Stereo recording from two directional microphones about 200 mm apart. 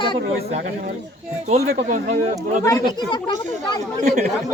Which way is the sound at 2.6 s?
20° left (ahead or behind).